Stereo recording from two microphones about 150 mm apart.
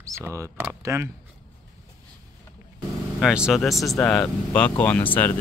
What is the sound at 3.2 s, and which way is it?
Speech, 5° right (ahead or behind).